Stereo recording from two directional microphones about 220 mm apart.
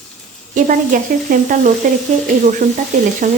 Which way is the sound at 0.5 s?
35° right (ahead or behind).